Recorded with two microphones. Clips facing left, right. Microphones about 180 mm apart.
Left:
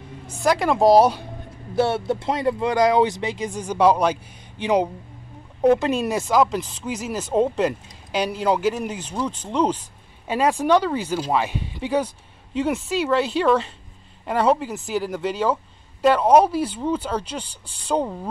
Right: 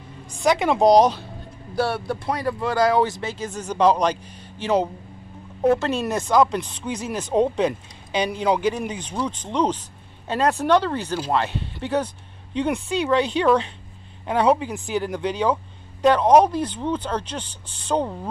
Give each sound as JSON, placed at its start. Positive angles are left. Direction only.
{"t": 0.4, "sound": "speech", "side_deg": 0}
{"t": 1.8, "sound": "speech", "side_deg": 25}